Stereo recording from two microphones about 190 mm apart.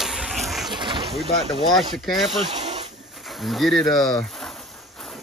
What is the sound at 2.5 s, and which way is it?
Snake, 35° right (ahead or behind).